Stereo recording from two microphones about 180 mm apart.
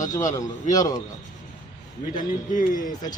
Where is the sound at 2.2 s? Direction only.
45° left (ahead or behind).